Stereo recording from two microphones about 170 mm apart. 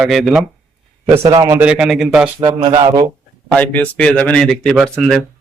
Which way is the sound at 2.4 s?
35° right (ahead or behind).